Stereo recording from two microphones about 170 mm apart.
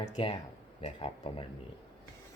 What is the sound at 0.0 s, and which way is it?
Speech, 40° left (ahead or behind).